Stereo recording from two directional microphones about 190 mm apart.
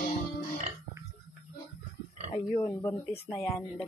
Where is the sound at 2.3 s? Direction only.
20° left (ahead or behind).